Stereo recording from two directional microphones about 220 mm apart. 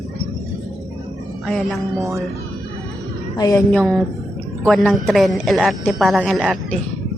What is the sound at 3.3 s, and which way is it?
Speech, 15° left (ahead or behind).